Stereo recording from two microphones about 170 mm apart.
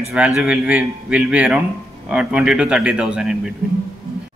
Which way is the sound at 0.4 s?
5° right (ahead or behind).